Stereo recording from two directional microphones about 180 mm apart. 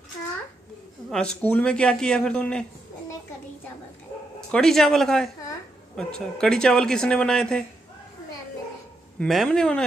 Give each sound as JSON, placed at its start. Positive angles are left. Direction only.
{"t": 1.1, "sound": "speech", "side_deg": 5}
{"t": 4.5, "sound": "speech", "side_deg": 5}
{"t": 9.2, "sound": "speech", "side_deg": 5}